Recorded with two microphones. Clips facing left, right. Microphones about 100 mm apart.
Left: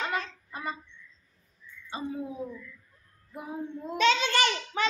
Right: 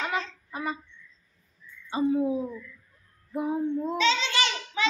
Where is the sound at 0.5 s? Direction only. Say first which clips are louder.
Right 6 dB; 10° right (ahead or behind).